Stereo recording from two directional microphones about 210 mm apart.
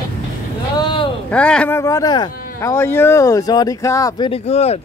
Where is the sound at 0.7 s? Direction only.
25° left (ahead or behind).